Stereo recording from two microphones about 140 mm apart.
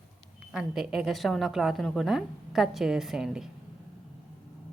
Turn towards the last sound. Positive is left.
turn(degrees=-5)  # may be behind; listen again after turning